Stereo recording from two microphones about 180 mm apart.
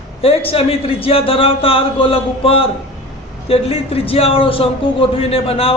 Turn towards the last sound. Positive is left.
turn(degrees=30)  # may be behind; listen again after turning